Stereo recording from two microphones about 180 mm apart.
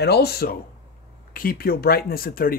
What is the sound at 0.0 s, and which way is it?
Speech, 65° left (ahead or behind).